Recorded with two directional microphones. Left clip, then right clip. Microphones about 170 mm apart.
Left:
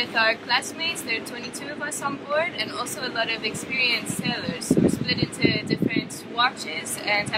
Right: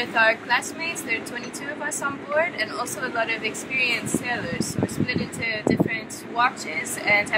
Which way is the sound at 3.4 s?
40° left (ahead or behind).